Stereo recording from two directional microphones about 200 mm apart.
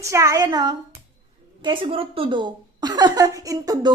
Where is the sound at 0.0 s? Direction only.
15° right (ahead or behind).